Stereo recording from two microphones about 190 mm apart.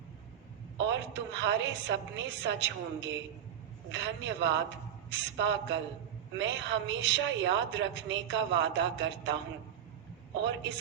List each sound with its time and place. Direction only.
0.9 s a woman's voice: 70° right (ahead or behind)
10.4 s a woman's voice: 70° right (ahead or behind)